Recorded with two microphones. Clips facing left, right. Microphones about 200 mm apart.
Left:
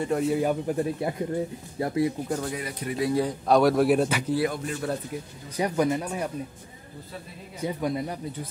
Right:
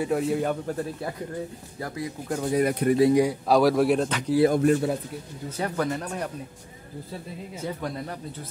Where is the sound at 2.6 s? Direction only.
55° right (ahead or behind).